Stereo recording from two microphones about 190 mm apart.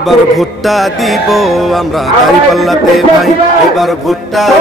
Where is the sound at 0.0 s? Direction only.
Centre (ahead or behind).